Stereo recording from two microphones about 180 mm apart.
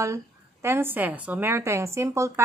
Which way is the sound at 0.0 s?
15° right (ahead or behind).